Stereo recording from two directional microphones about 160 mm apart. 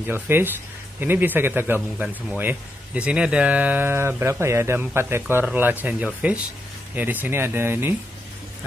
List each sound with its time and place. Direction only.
0.0 s a man's voice: 15° right (ahead or behind)